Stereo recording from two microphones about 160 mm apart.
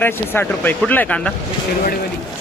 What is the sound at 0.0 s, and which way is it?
Speech, 10° left (ahead or behind).